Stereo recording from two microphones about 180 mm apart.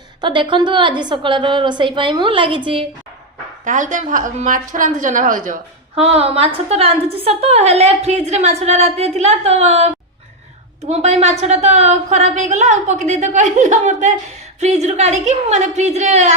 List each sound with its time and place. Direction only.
0.2 s a woman's voice: 25° right (ahead or behind)
3.6 s a woman's voice: 45° right (ahead or behind)
5.9 s a woman's voice: 35° right (ahead or behind)